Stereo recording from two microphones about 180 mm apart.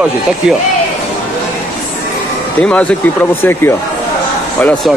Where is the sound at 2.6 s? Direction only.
5° left (ahead or behind).